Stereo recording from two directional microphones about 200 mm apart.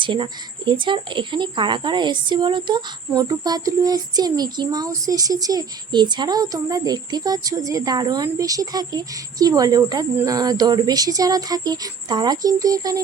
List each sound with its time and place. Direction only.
0.0 s speech: 25° right (ahead or behind)